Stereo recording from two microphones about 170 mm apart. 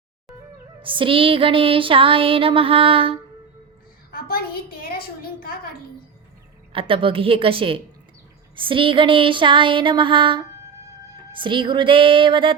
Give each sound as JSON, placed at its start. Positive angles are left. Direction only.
{"t": 0.8, "sound": "music", "side_deg": -30}
{"t": 4.1, "sound": "a woman's voice", "side_deg": 60}
{"t": 6.7, "sound": "music", "side_deg": -30}
{"t": 8.5, "sound": "a sound", "side_deg": -30}